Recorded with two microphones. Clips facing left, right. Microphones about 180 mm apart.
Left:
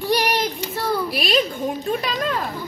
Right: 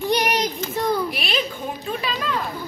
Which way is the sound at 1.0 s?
35° left (ahead or behind).